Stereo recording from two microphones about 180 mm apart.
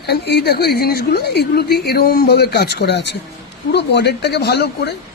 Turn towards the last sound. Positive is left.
turn(degrees=65)  # may be behind; listen again after turning